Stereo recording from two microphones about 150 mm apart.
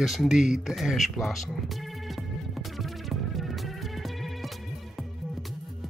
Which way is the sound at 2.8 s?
Centre (ahead or behind).